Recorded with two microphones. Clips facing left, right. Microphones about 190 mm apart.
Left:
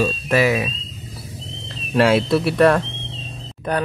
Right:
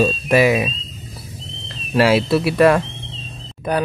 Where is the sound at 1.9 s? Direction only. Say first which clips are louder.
Right 1 dB; 5° right (ahead or behind).